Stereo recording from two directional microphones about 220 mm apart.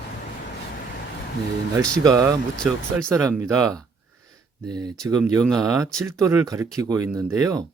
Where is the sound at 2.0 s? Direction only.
15° right (ahead or behind).